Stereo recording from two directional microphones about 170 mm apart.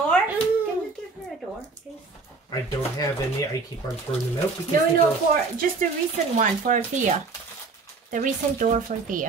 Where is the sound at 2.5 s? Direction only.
20° left (ahead or behind).